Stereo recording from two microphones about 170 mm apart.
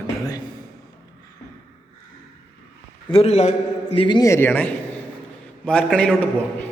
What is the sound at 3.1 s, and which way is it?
Speech, 35° left (ahead or behind).